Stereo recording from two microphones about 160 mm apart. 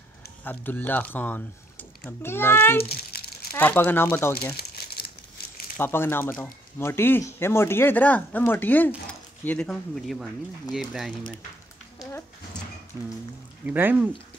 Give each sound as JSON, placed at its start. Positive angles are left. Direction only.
{"t": 0.4, "sound": "speech", "side_deg": 10}
{"t": 2.8, "sound": "crumpling", "side_deg": 75}
{"t": 3.5, "sound": "speech", "side_deg": 10}
{"t": 4.6, "sound": "crumpling", "side_deg": 80}
{"t": 5.8, "sound": "speech", "side_deg": 15}
{"t": 13.7, "sound": "speech", "side_deg": -10}